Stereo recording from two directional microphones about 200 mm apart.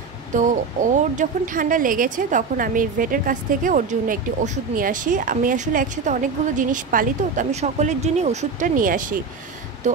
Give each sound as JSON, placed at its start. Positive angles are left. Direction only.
{"t": 0.3, "sound": "a woman's voice", "side_deg": -40}